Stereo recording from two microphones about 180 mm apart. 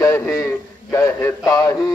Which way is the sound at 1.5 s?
20° left (ahead or behind).